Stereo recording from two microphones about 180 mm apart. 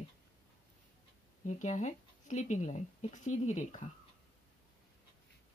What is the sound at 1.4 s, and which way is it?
Speech, 40° left (ahead or behind).